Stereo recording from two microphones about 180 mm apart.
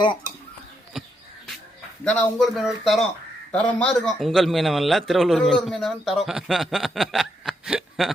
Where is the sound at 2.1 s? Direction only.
5° left (ahead or behind).